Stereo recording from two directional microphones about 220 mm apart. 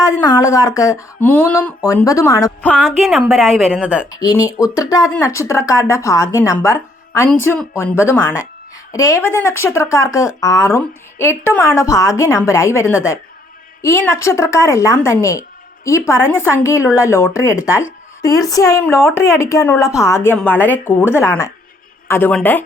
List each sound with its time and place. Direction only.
0.0 s speech: 15° left (ahead or behind); by 4.1 s 5° right (ahead or behind)
4.1 s speech: 15° left (ahead or behind)